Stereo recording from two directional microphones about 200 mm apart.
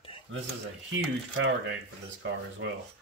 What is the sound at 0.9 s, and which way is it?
Speech, 70° right (ahead or behind).